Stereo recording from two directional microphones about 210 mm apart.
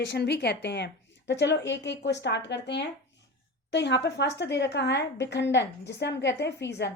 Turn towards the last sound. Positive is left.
turn(degrees=55)  # may be behind; listen again after turning